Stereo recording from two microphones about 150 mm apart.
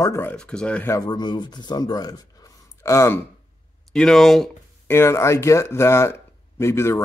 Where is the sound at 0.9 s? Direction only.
25° left (ahead or behind).